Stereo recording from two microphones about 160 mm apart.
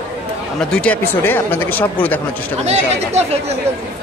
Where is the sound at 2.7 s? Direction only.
40° right (ahead or behind).